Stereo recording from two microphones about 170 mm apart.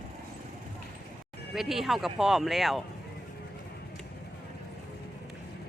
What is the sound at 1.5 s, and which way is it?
Speech, centre (ahead or behind).